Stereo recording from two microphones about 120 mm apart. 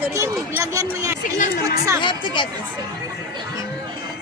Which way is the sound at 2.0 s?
40° left (ahead or behind).